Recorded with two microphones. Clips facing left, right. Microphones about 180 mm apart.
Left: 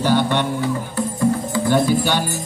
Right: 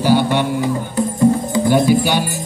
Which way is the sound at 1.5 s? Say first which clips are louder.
Right 4 dB; 15° right (ahead or behind).